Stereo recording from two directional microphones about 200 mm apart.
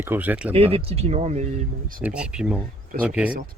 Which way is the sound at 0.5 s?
30° right (ahead or behind).